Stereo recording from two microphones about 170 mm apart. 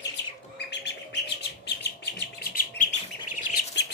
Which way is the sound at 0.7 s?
90° left.